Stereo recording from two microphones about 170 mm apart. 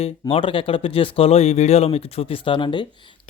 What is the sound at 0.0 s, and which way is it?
Speech, 35° left (ahead or behind).